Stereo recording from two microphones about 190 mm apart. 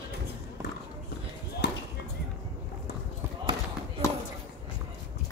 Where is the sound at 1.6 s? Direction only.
65° left (ahead or behind).